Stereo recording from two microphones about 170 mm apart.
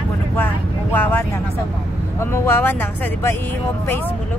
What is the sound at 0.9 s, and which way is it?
Speech, 10° left (ahead or behind).